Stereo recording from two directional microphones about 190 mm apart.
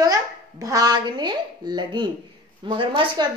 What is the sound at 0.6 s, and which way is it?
A woman's voice, 20° right (ahead or behind).